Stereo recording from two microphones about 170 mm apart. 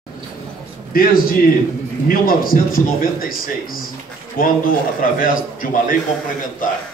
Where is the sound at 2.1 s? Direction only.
60° left (ahead or behind).